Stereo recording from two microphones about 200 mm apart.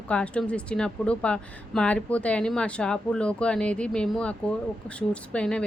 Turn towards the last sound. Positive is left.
turn(degrees=5)  # may be behind; listen again after turning